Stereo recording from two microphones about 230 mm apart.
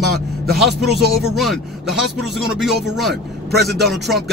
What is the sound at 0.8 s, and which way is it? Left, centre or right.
Speech, centre.